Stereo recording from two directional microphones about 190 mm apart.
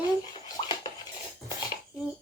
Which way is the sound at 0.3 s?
20° left (ahead or behind).